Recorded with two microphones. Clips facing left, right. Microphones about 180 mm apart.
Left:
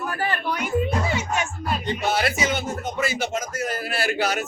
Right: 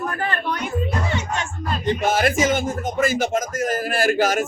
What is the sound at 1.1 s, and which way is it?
Music, 5° left (ahead or behind).